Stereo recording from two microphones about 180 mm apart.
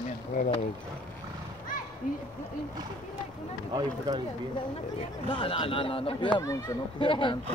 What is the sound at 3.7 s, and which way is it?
Speech, 20° right (ahead or behind).